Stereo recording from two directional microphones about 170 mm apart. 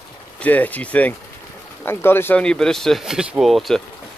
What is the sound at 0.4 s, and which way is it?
Speech, 10° left (ahead or behind).